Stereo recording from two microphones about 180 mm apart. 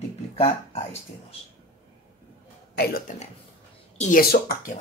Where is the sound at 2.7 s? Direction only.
60° left (ahead or behind).